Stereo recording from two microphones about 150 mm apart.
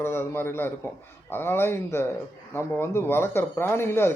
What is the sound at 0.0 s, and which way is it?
A man's voice, 15° left (ahead or behind).